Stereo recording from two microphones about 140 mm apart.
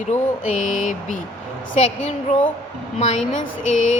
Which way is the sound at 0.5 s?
65° left (ahead or behind).